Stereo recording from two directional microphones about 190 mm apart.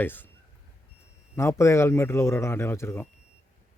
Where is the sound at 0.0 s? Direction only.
10° left (ahead or behind).